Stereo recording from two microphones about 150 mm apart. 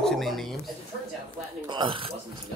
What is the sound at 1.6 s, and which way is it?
Speech, 30° right (ahead or behind).